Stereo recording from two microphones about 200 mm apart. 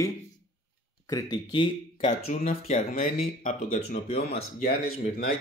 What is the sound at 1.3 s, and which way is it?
Speech, 25° left (ahead or behind).